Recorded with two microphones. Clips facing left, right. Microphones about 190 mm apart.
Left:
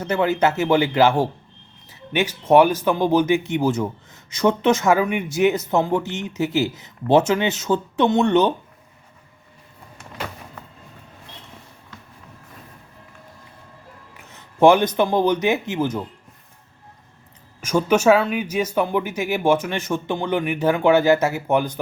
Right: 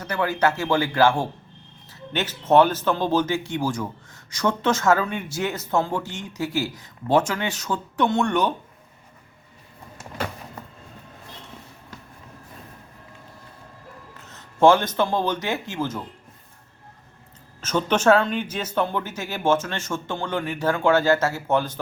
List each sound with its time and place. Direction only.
0.0 s speech: 25° left (ahead or behind)
14.2 s speech: 15° left (ahead or behind)
17.6 s speech: 10° left (ahead or behind)